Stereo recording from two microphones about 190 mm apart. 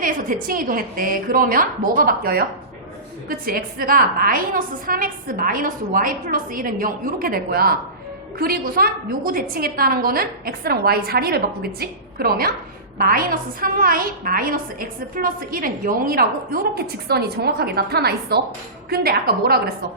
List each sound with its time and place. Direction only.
0.0 s a woman's voice: 45° right (ahead or behind)